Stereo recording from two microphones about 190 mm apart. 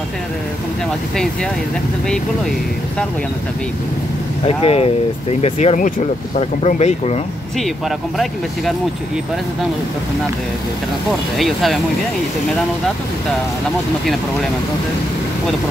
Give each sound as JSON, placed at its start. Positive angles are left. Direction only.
{"t": 1.1, "sound": "speech", "side_deg": 5}
{"t": 4.5, "sound": "speech", "side_deg": 30}
{"t": 11.1, "sound": "speech", "side_deg": 0}